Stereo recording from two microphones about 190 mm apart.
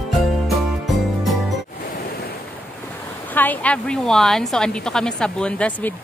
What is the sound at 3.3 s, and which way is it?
A woman's voice, 10° left (ahead or behind).